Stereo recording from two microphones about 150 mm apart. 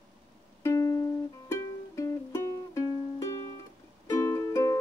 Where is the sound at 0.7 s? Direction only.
20° left (ahead or behind).